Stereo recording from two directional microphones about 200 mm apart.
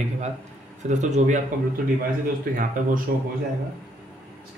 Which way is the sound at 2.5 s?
45° right (ahead or behind).